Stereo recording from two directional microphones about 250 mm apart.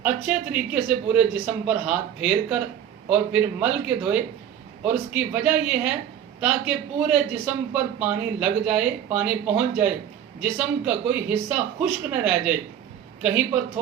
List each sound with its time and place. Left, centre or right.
0.0 s a man's voice: centre